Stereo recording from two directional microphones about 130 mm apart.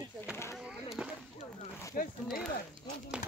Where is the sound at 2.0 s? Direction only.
90° left.